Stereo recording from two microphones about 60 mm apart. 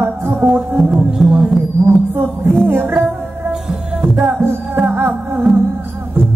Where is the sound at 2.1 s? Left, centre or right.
Right.